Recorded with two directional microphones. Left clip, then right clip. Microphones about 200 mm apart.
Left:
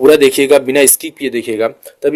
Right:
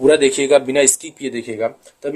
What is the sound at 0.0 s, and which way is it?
Speech, 35° left (ahead or behind).